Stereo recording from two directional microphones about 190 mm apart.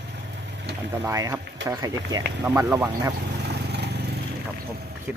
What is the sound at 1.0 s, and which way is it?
Speech, 15° right (ahead or behind).